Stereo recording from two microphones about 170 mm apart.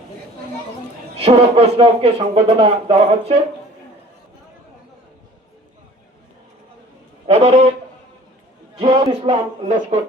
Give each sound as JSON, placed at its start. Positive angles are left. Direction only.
{"t": 1.1, "sound": "speech", "side_deg": -35}
{"t": 7.3, "sound": "speech", "side_deg": -40}
{"t": 8.8, "sound": "speech", "side_deg": -30}